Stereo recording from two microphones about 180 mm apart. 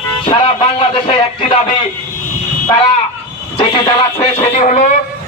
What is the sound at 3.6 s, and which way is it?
Speech, 20° left (ahead or behind).